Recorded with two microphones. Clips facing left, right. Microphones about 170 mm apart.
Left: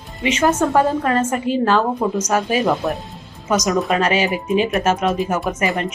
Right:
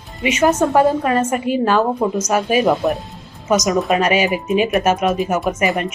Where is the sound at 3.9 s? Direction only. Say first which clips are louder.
Right 2 dB; 10° right (ahead or behind).